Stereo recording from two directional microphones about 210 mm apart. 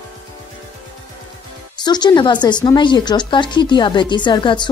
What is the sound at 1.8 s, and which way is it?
Speech, 20° left (ahead or behind).